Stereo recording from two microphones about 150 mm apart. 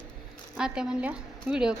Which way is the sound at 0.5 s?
5° right (ahead or behind).